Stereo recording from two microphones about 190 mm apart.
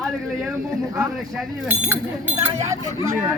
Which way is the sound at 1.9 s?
15° right (ahead or behind).